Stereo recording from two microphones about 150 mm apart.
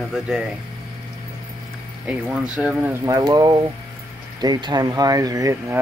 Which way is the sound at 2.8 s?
20° right (ahead or behind).